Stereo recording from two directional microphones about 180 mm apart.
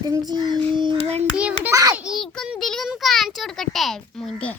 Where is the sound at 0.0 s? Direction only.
20° right (ahead or behind).